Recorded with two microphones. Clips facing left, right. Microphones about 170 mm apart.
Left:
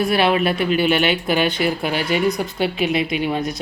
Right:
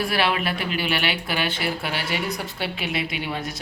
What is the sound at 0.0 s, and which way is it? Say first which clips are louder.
Speech: left 6 dB; 20° left (ahead or behind).